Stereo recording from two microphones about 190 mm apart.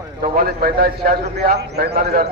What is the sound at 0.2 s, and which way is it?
A man's voice, 55° right (ahead or behind).